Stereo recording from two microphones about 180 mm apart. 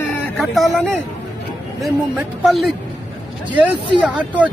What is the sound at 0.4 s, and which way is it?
Speech, centre (ahead or behind).